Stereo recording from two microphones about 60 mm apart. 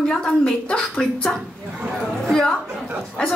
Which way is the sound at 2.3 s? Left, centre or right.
Centre.